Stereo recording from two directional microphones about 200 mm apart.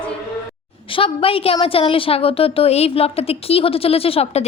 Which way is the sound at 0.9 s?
25° left (ahead or behind).